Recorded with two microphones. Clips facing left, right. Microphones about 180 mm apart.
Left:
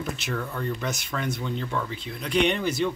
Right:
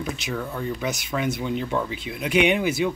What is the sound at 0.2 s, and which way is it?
Speech, 5° right (ahead or behind).